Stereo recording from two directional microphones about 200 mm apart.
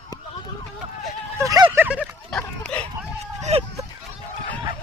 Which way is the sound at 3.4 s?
30° right (ahead or behind).